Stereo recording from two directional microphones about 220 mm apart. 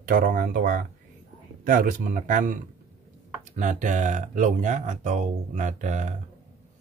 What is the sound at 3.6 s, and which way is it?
Speech, 35° right (ahead or behind).